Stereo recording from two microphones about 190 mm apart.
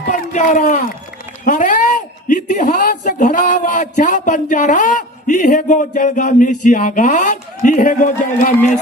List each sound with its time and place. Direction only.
0.1 s speech: 40° left (ahead or behind)